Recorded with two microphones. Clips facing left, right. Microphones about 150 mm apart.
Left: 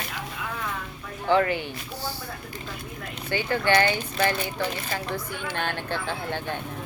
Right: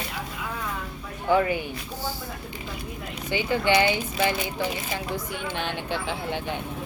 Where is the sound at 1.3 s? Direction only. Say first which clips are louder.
Even; 10° right (ahead or behind).